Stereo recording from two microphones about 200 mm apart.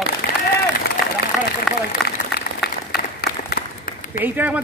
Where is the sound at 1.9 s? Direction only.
50° left (ahead or behind).